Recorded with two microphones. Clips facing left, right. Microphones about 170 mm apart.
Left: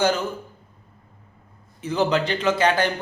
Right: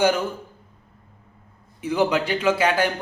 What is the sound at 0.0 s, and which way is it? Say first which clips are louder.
Speech: right 1 dB; 10° right (ahead or behind).